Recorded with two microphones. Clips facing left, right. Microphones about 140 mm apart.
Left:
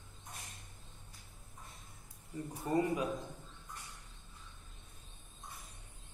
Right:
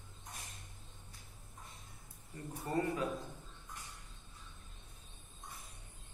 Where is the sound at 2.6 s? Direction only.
15° left (ahead or behind).